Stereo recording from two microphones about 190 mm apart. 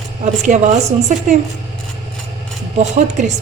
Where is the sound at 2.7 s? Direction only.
40° right (ahead or behind).